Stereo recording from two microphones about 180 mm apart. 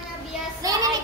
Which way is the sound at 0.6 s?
20° right (ahead or behind).